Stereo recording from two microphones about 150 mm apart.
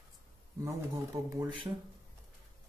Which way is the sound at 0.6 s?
20° right (ahead or behind).